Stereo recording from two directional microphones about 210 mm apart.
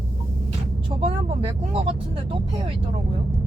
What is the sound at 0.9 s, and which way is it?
Speech, 25° right (ahead or behind).